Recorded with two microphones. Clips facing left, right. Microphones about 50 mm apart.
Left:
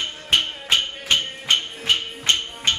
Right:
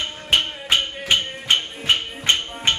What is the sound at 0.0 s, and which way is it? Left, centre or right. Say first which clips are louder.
Music: right 1 dB; centre.